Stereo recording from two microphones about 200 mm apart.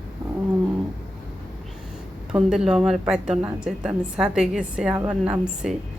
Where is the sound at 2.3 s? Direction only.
5° right (ahead or behind).